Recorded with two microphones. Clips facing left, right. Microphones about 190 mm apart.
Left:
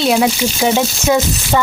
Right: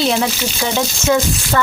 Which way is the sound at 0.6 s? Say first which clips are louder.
Left 4 dB; 20° left (ahead or behind).